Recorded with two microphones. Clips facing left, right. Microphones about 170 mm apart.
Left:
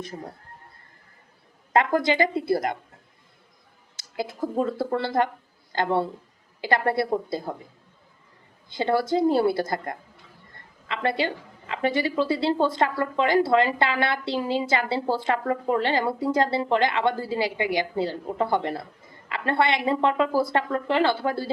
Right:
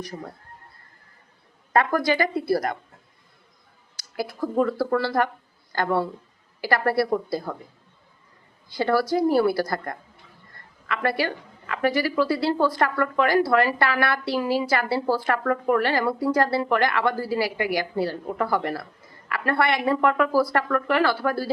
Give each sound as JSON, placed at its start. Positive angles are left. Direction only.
{"t": 1.7, "sound": "a woman's voice", "side_deg": 20}
{"t": 3.9, "sound": "a woman's voice", "side_deg": 20}
{"t": 8.7, "sound": "a woman's voice", "side_deg": 20}